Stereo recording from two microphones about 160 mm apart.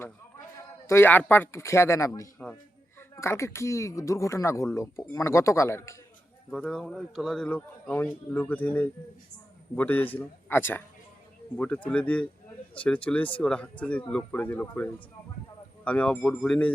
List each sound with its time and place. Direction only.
0.9 s a man's voice: 15° left (ahead or behind)
6.5 s a man's voice: 5° left (ahead or behind)